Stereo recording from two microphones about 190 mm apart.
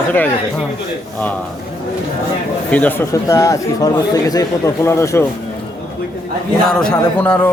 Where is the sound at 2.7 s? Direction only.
10° left (ahead or behind).